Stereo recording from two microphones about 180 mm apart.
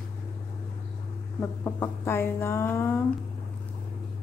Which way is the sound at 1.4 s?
10° left (ahead or behind).